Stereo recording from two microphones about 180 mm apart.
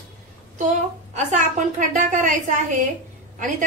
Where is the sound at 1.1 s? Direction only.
45° right (ahead or behind).